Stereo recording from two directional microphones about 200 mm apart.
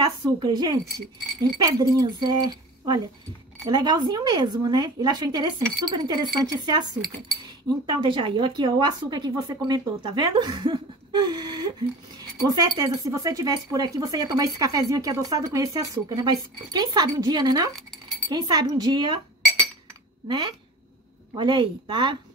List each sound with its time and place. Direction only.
0.0 s speech: 20° right (ahead or behind)
21.4 s speech: 20° right (ahead or behind)